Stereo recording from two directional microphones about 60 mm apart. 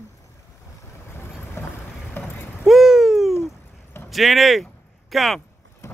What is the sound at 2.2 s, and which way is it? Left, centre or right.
Clip-clop, left.